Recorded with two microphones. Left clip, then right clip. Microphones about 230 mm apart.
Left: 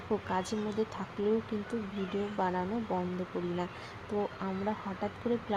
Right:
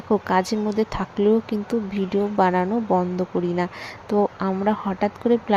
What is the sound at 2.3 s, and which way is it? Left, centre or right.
Speech, right.